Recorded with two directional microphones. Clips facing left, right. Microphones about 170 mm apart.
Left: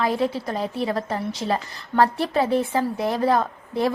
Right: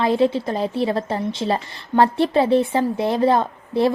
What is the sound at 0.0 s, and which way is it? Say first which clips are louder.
A woman's voice: right 5 dB; 25° right (ahead or behind).